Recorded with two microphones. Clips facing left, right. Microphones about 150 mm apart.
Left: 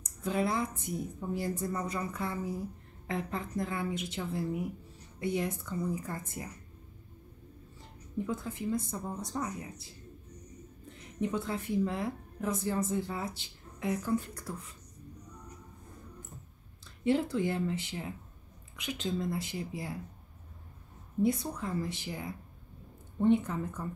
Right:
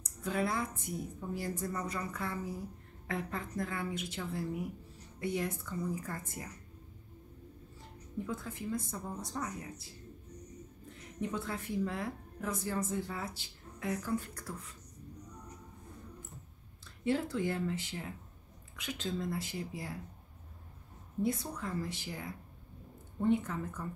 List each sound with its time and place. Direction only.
0.2 s speech: 20° left (ahead or behind)
8.3 s speech: 20° left (ahead or behind)
11.1 s speech: 20° left (ahead or behind)
17.0 s speech: 20° left (ahead or behind)
21.2 s speech: 20° left (ahead or behind)